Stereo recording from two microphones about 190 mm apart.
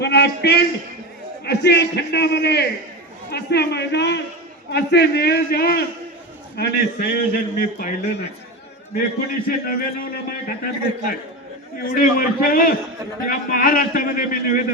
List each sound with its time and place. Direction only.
0.0 s a sound: 60° left (ahead or behind)
1.5 s a man's voice: 65° left (ahead or behind)
9.6 s a man's voice: 50° left (ahead or behind)